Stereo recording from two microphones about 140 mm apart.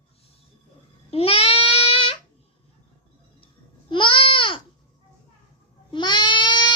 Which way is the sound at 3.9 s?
35° left (ahead or behind).